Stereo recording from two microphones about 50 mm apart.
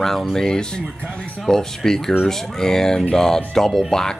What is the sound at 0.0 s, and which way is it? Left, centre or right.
Speech, centre.